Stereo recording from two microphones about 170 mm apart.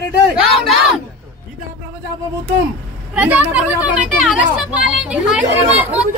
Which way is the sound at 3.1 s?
10° right (ahead or behind).